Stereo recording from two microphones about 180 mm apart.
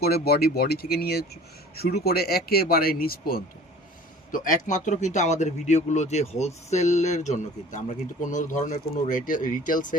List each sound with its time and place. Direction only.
0.0 s speech: 60° left (ahead or behind)
4.3 s speech: 45° left (ahead or behind)